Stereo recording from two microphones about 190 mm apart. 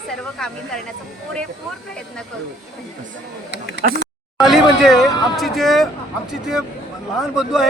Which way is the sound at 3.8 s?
50° right (ahead or behind).